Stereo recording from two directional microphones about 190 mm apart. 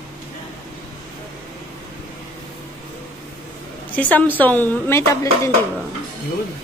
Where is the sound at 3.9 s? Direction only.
10° left (ahead or behind).